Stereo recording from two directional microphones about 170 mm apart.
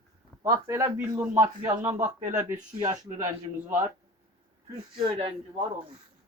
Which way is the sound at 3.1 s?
25° right (ahead or behind).